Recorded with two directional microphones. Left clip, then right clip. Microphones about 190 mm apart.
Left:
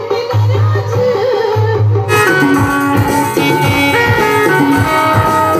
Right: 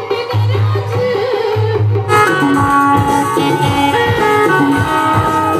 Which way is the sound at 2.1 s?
25° right (ahead or behind).